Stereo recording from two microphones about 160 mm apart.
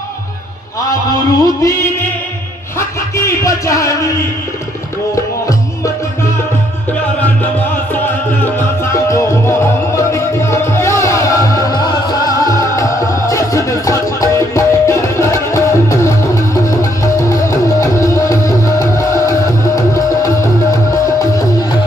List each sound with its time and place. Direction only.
1.4 s music: 20° left (ahead or behind)
3.2 s music: 20° left (ahead or behind)
8.5 s music: 20° left (ahead or behind)